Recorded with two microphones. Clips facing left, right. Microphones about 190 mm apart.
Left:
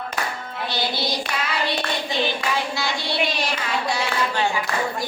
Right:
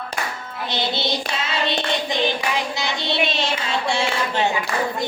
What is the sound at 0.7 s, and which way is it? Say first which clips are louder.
Hands: right 2 dB; 25° right (ahead or behind).